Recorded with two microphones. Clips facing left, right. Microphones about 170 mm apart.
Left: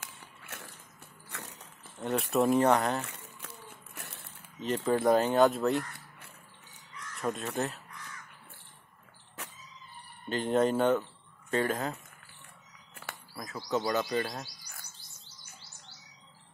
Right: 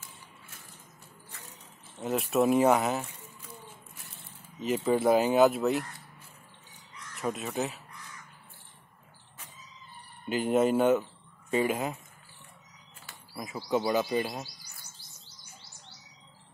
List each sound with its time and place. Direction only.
0.0 s biting: 75° left (ahead or behind)
2.0 s speech: 5° right (ahead or behind)
3.1 s a sound: 75° left (ahead or behind)
4.6 s speech: 5° right (ahead or behind)
7.2 s speech: centre (ahead or behind)
9.4 s a sound: 75° left (ahead or behind)
10.3 s speech: 10° right (ahead or behind)
13.3 s speech: 10° right (ahead or behind)